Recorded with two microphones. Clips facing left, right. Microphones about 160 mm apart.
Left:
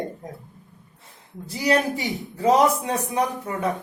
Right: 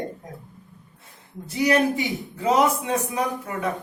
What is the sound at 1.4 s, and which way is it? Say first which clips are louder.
A woman's voice: right 1 dB; 35° left (ahead or behind).